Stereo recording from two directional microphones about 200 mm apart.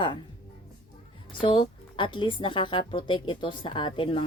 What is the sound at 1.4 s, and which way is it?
A woman's voice, 25° left (ahead or behind).